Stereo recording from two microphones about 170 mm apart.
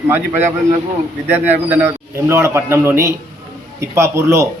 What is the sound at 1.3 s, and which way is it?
A man's voice, 10° right (ahead or behind).